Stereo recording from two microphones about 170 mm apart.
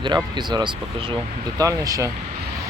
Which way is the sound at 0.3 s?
25° right (ahead or behind).